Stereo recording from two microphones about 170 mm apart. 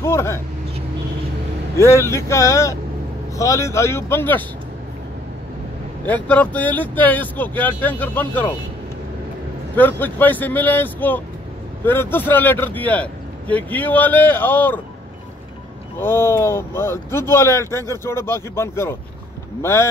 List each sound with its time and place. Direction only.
0.0 s vehicle: 15° left (ahead or behind)
1.8 s speech: 15° left (ahead or behind)
6.0 s speech: 10° left (ahead or behind)
9.8 s speech: 10° left (ahead or behind)
16.0 s speech: 15° left (ahead or behind)